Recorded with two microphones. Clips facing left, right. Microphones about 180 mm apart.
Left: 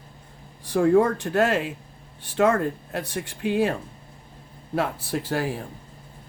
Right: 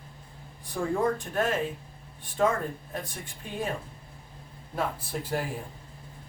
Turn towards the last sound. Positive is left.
turn(degrees=80)